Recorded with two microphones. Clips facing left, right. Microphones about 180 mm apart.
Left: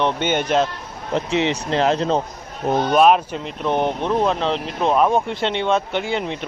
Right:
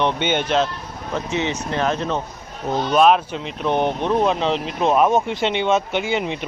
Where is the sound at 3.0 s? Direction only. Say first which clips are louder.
Right 1 dB; 5° left (ahead or behind).